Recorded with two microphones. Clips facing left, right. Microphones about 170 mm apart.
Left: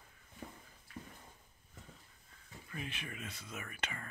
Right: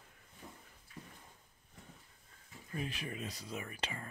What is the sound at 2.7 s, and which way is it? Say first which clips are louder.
Speech: right 4 dB; 35° right (ahead or behind).